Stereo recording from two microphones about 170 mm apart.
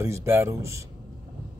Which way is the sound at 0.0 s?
15° right (ahead or behind).